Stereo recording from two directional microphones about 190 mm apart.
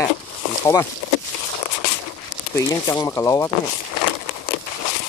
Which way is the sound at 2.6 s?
15° left (ahead or behind).